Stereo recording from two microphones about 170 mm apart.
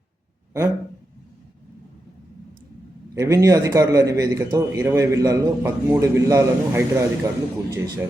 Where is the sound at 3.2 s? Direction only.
20° right (ahead or behind).